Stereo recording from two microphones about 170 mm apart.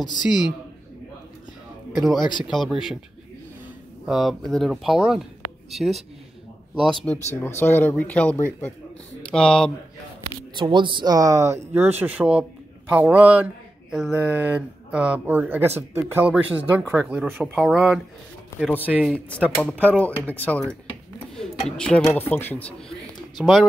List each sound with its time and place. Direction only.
0.0 s speech: 25° left (ahead or behind)
2.1 s speech: 25° left (ahead or behind)
2.4 s speech: centre (ahead or behind)
4.0 s speech: 5° right (ahead or behind)
10.5 s a man's voice: 25° right (ahead or behind); by 20.0 s 10° right (ahead or behind)
20.2 s speech: 10° left (ahead or behind)
22.2 s speech: 10° left (ahead or behind)